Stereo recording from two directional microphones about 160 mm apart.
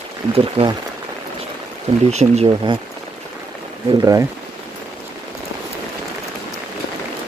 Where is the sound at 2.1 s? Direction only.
45° right (ahead or behind).